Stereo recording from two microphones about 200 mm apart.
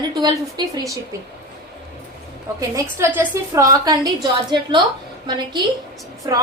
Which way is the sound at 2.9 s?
10° right (ahead or behind).